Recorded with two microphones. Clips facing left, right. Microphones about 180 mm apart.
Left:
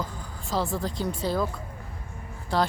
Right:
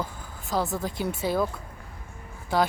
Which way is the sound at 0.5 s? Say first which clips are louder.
Even; centre (ahead or behind).